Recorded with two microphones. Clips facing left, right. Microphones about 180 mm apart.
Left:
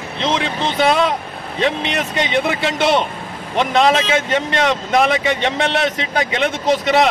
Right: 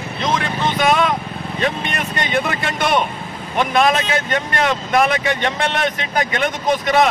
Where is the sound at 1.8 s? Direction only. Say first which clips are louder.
Left 3 dB; 90° left.